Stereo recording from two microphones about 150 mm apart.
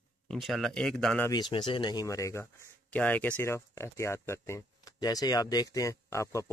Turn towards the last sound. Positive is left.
turn(degrees=20)  # may be behind; listen again after turning